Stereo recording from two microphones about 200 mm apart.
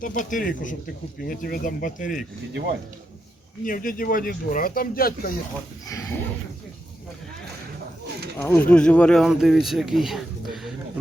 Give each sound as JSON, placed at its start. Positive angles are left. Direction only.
{"t": 0.0, "sound": "speech", "side_deg": 40}
{"t": 3.6, "sound": "speech", "side_deg": 45}
{"t": 8.4, "sound": "speech", "side_deg": 10}